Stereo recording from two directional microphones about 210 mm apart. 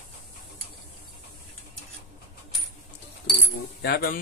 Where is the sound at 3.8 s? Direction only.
45° left (ahead or behind).